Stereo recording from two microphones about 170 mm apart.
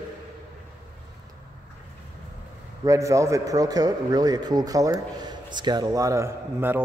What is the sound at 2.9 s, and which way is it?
A man's voice, 20° right (ahead or behind).